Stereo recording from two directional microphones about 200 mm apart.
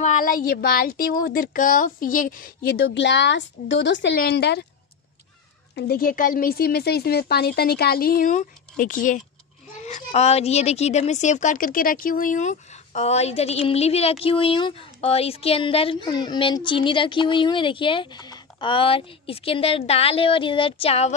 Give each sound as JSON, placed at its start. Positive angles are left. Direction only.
{"t": 0.0, "sound": "speech", "side_deg": 40}
{"t": 5.8, "sound": "a woman's voice", "side_deg": 50}